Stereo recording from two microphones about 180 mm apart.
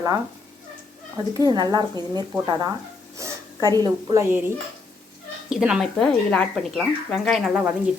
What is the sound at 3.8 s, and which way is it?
Speech, 15° right (ahead or behind).